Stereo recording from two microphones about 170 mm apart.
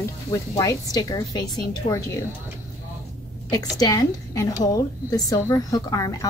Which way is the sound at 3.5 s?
20° left (ahead or behind).